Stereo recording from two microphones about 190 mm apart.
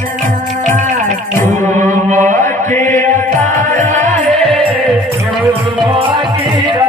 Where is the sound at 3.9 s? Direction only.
40° right (ahead or behind).